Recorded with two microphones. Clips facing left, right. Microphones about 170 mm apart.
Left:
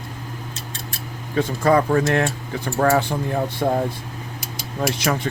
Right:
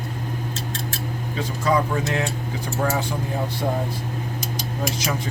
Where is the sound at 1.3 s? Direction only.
55° left (ahead or behind).